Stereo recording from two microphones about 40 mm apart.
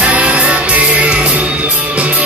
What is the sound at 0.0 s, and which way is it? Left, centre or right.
Music, right.